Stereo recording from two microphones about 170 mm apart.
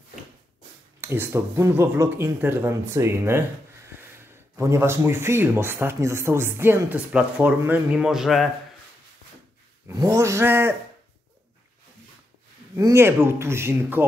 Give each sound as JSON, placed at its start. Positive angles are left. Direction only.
{"t": 1.0, "sound": "speech", "side_deg": -15}
{"t": 4.6, "sound": "speech", "side_deg": -15}
{"t": 9.8, "sound": "speech", "side_deg": -15}
{"t": 12.7, "sound": "speech", "side_deg": -15}